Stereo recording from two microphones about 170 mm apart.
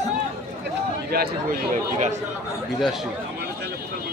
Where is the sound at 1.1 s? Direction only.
60° right (ahead or behind).